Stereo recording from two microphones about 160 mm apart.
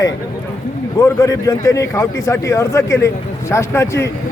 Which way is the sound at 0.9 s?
20° left (ahead or behind).